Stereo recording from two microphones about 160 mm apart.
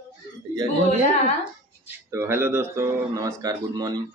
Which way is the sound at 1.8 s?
15° right (ahead or behind).